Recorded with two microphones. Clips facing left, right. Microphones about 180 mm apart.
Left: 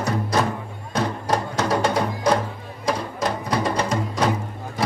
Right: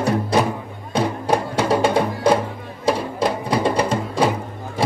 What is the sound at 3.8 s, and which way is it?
Music, 30° right (ahead or behind).